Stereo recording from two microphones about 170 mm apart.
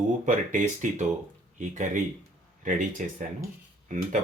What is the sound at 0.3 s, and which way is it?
Speech, 50° right (ahead or behind).